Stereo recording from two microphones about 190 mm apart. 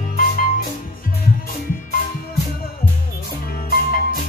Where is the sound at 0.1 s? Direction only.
50° left (ahead or behind).